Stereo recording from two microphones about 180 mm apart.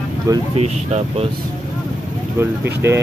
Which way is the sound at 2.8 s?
15° right (ahead or behind).